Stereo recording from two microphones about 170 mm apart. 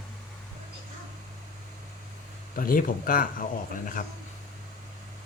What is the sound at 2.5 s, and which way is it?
Speech, 55° left (ahead or behind).